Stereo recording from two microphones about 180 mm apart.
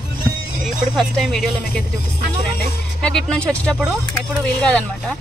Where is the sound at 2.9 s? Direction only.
5° left (ahead or behind).